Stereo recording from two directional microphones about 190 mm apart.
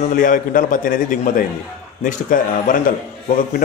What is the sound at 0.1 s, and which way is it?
A man's voice, 45° left (ahead or behind).